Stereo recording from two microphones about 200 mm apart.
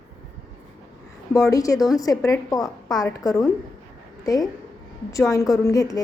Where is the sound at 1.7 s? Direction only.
Centre (ahead or behind).